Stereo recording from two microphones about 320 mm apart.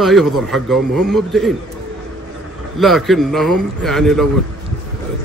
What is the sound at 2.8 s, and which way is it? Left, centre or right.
Speech, centre.